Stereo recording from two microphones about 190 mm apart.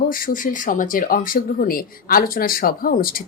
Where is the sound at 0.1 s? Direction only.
45° left (ahead or behind).